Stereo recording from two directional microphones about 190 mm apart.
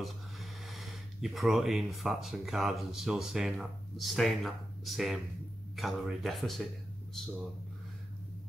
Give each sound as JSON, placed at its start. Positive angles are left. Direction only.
{"t": 0.0, "sound": "speech", "side_deg": 0}